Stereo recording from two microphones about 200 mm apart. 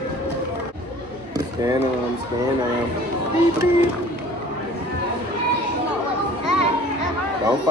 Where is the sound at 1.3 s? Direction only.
15° right (ahead or behind).